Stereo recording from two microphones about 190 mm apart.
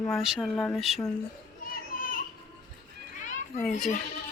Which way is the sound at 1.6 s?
45° left (ahead or behind).